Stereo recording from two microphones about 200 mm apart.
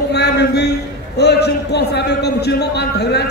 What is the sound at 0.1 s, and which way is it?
A man's voice, 55° left (ahead or behind).